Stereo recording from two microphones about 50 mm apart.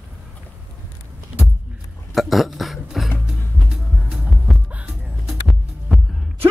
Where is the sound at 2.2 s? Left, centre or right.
Centre.